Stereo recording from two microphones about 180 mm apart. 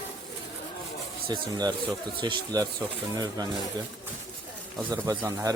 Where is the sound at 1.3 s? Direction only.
20° right (ahead or behind).